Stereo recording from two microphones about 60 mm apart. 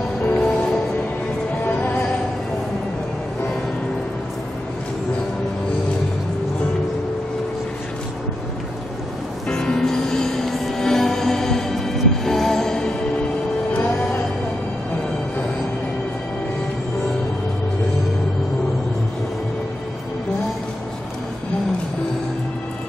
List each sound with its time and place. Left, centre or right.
0.4 s music: centre
1.8 s music: left
9.5 s music: centre